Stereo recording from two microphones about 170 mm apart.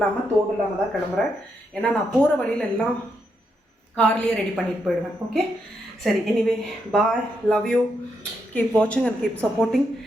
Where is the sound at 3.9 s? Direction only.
5° left (ahead or behind).